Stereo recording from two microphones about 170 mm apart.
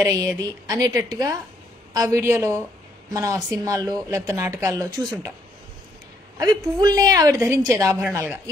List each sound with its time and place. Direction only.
0.0 s a woman's voice: 20° right (ahead or behind)
6.3 s a woman's voice: 25° right (ahead or behind)